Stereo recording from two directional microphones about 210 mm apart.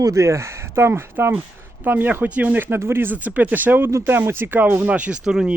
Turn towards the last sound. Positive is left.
turn(degrees=-5)  # may be behind; listen again after turning